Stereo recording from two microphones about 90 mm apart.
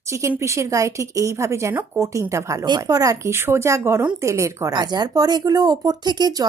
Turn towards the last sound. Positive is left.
turn(degrees=-50)  # may be behind; listen again after turning